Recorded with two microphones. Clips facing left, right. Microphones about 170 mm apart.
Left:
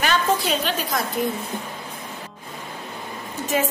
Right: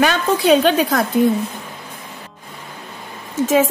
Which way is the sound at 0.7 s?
60° right (ahead or behind).